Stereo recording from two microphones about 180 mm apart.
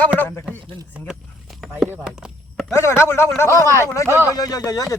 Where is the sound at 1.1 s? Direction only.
Centre (ahead or behind).